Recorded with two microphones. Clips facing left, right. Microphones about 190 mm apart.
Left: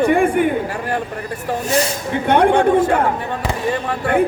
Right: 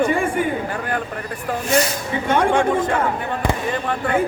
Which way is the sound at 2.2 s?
60° left (ahead or behind).